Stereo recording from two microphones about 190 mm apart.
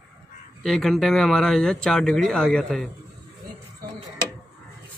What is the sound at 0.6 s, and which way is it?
Speech, centre (ahead or behind).